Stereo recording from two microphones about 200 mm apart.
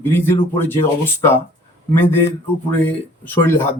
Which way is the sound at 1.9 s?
10° left (ahead or behind).